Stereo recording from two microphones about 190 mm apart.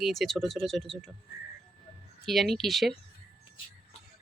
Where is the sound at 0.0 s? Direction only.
Centre (ahead or behind).